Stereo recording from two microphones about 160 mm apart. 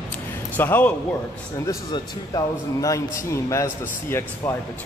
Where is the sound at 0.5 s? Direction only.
10° left (ahead or behind).